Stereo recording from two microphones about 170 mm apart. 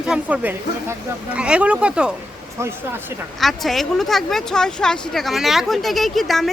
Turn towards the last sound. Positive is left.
turn(degrees=0)  # may be behind; listen again after turning